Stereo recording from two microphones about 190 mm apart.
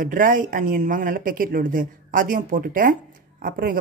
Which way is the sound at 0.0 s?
45° right (ahead or behind).